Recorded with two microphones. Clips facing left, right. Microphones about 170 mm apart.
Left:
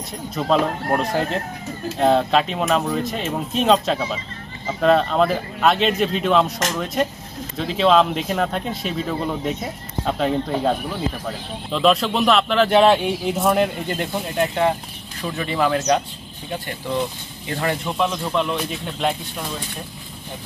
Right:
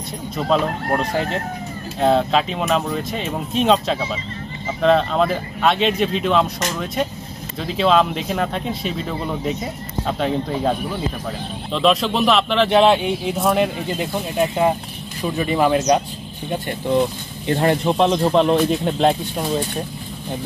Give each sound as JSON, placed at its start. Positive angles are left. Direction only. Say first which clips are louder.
{"t": 0.5, "sound": "a man's voice", "louder": "even", "side_deg": 0}
{"t": 17.5, "sound": "speech", "louder": "right 7 dB", "side_deg": -35}